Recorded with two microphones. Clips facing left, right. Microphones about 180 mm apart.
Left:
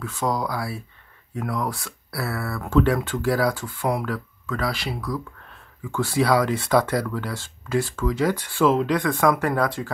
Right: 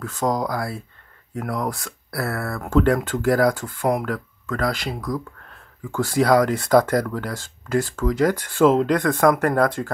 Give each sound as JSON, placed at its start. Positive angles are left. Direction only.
{"t": 0.0, "sound": "speech", "side_deg": -45}